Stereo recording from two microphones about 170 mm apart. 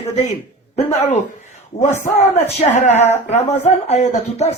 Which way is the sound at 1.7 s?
40° left (ahead or behind).